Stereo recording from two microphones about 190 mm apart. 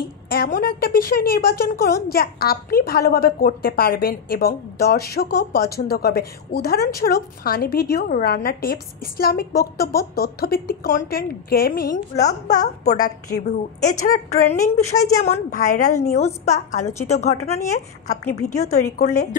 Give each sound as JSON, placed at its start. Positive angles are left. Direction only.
{"t": 0.3, "sound": "a woman's voice", "side_deg": 50}